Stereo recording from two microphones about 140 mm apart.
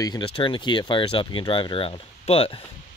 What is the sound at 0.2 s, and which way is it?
Speech, 40° left (ahead or behind).